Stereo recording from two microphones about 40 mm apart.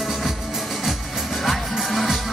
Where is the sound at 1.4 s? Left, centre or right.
Centre.